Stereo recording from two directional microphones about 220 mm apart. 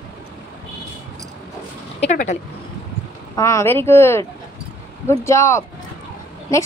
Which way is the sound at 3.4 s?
15° left (ahead or behind).